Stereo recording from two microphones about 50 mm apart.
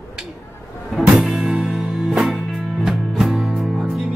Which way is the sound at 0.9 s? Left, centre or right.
Centre.